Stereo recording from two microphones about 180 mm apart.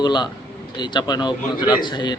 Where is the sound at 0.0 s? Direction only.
25° left (ahead or behind).